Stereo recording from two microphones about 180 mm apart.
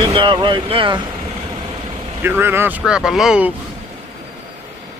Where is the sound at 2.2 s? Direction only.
15° right (ahead or behind).